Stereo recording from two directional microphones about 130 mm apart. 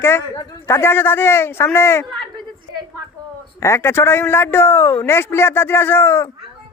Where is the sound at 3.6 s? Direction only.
20° left (ahead or behind).